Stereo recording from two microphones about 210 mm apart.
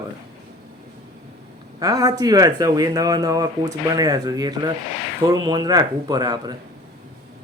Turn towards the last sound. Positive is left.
turn(degrees=-20)  # may be behind; listen again after turning